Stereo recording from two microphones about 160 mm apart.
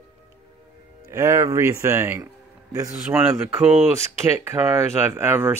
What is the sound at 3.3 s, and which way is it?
Speech, 10° right (ahead or behind).